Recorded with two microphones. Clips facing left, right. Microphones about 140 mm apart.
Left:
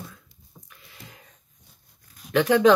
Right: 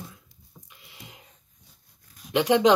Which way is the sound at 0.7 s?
20° right (ahead or behind).